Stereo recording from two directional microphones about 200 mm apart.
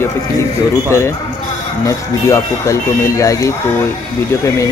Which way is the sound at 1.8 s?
15° left (ahead or behind).